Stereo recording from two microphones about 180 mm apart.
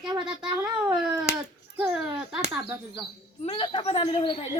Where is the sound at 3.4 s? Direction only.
30° left (ahead or behind).